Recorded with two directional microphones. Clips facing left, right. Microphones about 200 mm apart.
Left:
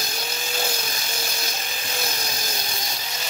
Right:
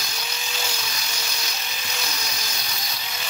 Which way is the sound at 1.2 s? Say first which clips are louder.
Left 3 dB; 50° left (ahead or behind).